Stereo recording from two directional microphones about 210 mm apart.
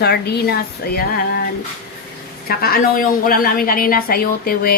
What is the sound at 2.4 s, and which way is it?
A woman's voice, 45° left (ahead or behind).